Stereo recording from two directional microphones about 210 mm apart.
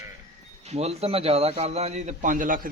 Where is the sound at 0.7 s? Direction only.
30° right (ahead or behind).